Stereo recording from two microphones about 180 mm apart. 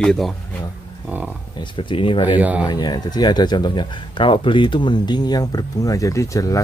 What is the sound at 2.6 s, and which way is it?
Speech, 25° left (ahead or behind).